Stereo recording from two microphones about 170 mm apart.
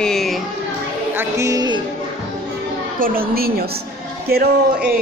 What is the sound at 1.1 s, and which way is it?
Speech, 15° right (ahead or behind).